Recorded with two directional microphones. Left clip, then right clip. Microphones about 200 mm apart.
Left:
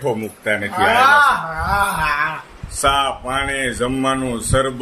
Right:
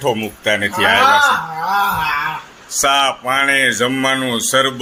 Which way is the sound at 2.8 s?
10° right (ahead or behind).